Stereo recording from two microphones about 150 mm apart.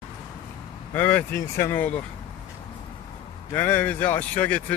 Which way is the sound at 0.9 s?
10° left (ahead or behind).